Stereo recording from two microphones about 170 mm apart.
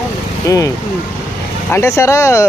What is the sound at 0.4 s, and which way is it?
Speech, 20° left (ahead or behind).